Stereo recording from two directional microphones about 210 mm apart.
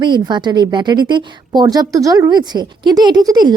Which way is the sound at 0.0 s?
20° right (ahead or behind).